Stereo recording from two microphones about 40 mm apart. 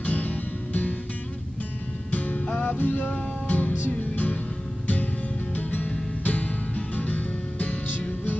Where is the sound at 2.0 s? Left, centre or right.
Left.